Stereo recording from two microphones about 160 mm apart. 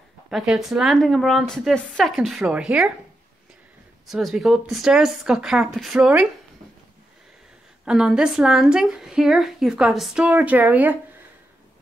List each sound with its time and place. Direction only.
0.3 s a woman's voice: centre (ahead or behind)
4.1 s a woman's voice: centre (ahead or behind)
7.8 s a woman's voice: 5° right (ahead or behind)